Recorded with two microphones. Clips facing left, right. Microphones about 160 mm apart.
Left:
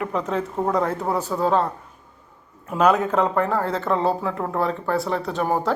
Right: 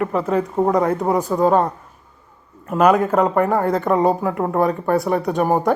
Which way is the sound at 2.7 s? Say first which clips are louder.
Right 4 dB; 10° right (ahead or behind).